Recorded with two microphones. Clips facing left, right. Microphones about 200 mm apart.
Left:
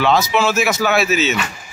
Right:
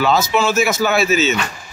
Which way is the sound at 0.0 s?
Centre (ahead or behind).